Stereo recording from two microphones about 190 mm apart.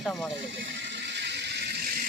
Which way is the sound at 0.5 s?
70° right (ahead or behind).